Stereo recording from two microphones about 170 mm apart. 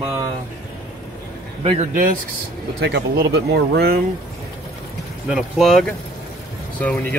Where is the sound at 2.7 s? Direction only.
80° right.